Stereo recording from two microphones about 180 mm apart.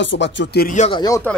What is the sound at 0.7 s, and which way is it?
Speech, 35° left (ahead or behind).